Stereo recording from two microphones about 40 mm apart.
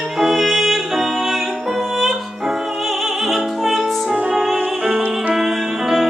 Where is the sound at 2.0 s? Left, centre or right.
Centre.